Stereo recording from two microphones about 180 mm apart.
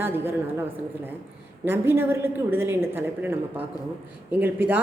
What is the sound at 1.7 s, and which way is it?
A woman's voice, 10° right (ahead or behind).